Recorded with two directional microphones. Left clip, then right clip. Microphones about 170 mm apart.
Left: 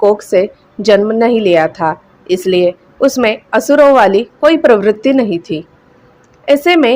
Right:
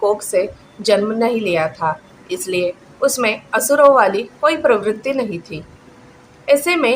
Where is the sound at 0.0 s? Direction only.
40° left (ahead or behind).